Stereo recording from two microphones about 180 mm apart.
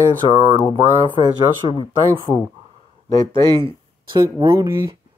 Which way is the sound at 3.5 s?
25° right (ahead or behind).